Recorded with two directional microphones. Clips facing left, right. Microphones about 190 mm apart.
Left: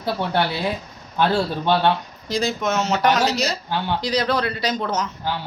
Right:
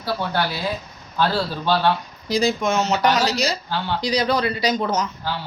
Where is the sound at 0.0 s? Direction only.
25° left (ahead or behind).